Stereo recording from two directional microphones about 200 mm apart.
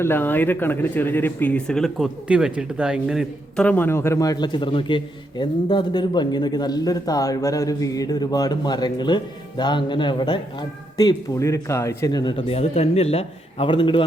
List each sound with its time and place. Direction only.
0.0 s speech: 10° left (ahead or behind)